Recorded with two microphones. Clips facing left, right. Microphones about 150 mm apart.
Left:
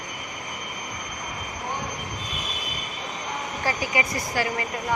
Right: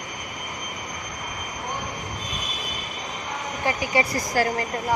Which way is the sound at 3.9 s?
35° right (ahead or behind).